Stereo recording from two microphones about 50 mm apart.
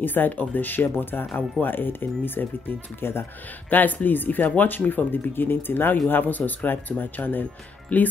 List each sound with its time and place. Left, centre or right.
0.0 s speech: left
3.7 s speech: left